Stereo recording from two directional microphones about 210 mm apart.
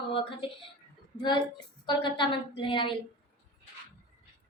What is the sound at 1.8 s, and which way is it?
A woman's voice, 25° left (ahead or behind).